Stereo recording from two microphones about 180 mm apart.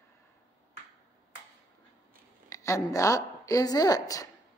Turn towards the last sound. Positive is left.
turn(degrees=20)  # may be behind; listen again after turning